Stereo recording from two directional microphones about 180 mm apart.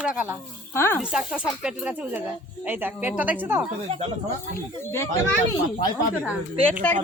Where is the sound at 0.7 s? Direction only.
15° left (ahead or behind).